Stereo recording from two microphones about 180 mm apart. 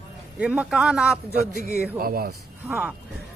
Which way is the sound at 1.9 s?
55° right (ahead or behind).